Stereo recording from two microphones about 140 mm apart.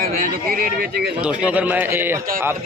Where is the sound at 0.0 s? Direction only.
90° right.